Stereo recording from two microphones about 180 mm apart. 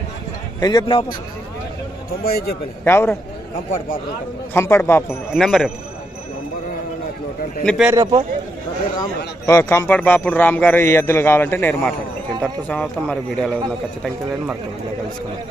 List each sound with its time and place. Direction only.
0.6 s a man's voice: 25° left (ahead or behind)
2.2 s a man's voice: 60° left (ahead or behind)
2.8 s a man's voice: 15° left (ahead or behind)
4.6 s a man's voice: 15° left (ahead or behind)
5.3 s speech: centre (ahead or behind)
7.6 s speech: centre (ahead or behind)
7.9 s a man's voice: 25° right (ahead or behind)
9.5 s a man's voice: 15° left (ahead or behind)